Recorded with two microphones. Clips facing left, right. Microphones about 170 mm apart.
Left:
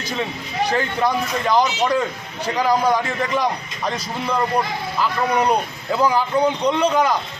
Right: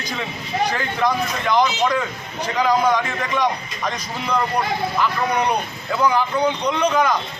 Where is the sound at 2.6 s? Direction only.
10° left (ahead or behind).